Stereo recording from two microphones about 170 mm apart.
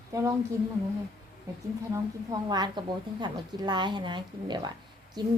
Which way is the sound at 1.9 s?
20° right (ahead or behind).